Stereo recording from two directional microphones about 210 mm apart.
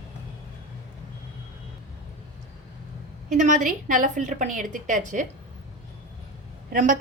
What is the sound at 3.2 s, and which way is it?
A woman's voice, 40° right (ahead or behind).